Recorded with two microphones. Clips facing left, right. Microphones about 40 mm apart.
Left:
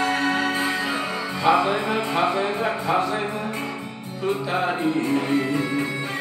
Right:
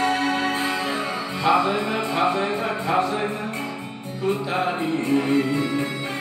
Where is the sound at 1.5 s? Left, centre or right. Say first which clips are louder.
Even; centre.